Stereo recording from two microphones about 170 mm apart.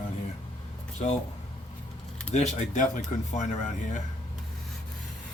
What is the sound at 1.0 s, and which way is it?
Speech, 40° left (ahead or behind).